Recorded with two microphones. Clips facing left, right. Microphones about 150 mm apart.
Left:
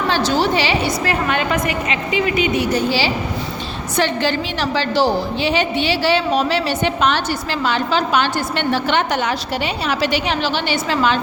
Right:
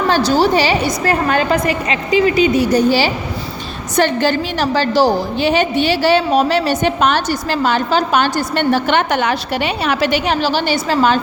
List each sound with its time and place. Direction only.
0.1 s a woman's voice: 40° right (ahead or behind)